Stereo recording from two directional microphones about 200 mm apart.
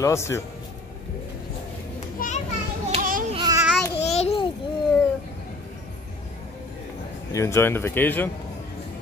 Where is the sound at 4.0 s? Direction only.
30° left (ahead or behind).